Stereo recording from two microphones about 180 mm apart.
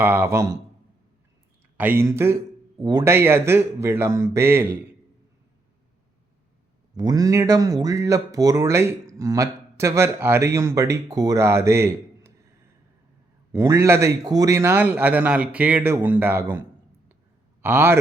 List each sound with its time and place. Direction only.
0.0 s speech: 10° right (ahead or behind)
1.8 s speech: 10° right (ahead or behind)
6.9 s speech: 20° right (ahead or behind)
13.5 s a man's voice: 15° right (ahead or behind)